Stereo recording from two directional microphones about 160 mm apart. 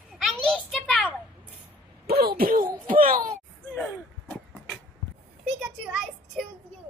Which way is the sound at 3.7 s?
10° left (ahead or behind).